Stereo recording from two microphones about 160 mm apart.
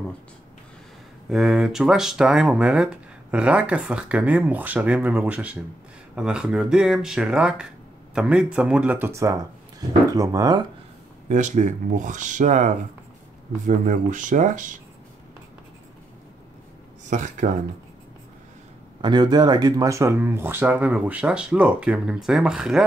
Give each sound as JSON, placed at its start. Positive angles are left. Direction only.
{"t": 1.3, "sound": "speech", "side_deg": -5}
{"t": 11.2, "sound": "speech", "side_deg": -50}
{"t": 17.1, "sound": "speech", "side_deg": -50}
{"t": 18.9, "sound": "speech", "side_deg": -30}